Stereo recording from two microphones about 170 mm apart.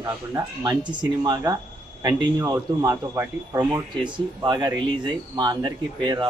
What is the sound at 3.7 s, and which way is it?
Speech, 25° right (ahead or behind).